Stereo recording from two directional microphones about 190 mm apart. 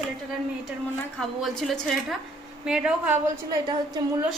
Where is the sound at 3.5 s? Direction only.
20° right (ahead or behind).